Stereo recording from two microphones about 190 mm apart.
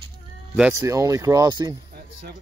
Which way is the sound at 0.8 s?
15° right (ahead or behind).